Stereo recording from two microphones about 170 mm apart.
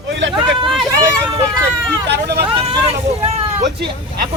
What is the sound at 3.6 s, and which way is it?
Vehicle, 75° right (ahead or behind).